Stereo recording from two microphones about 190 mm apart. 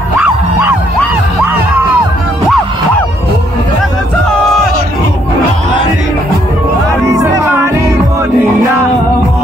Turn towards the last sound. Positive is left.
turn(degrees=-15)  # may be behind; listen again after turning